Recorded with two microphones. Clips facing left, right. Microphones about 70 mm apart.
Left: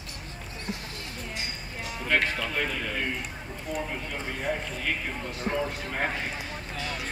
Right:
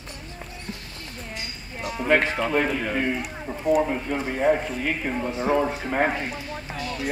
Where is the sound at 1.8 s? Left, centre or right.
Right.